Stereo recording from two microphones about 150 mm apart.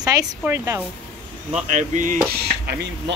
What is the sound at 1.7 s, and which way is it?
Speech, 60° right (ahead or behind).